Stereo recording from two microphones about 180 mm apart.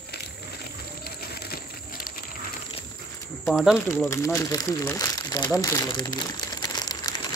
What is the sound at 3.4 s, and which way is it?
Speech, centre (ahead or behind).